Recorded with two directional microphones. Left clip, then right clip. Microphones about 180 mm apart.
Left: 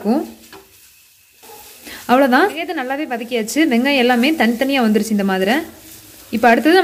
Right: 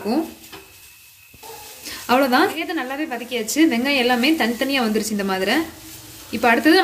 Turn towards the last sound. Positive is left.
turn(degrees=50)  # may be behind; listen again after turning